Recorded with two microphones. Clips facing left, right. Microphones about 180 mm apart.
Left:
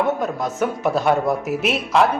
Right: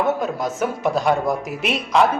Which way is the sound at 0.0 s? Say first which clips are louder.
Even; centre (ahead or behind).